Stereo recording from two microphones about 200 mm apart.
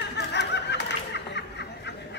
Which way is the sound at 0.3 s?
60° left (ahead or behind).